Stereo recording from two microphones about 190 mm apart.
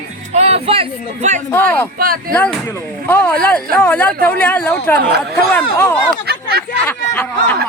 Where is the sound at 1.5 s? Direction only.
10° left (ahead or behind).